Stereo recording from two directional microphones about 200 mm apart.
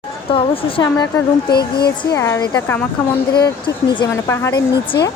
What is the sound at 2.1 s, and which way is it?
Speech, 15° left (ahead or behind).